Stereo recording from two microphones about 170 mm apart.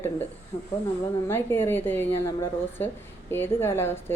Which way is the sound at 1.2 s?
15° left (ahead or behind).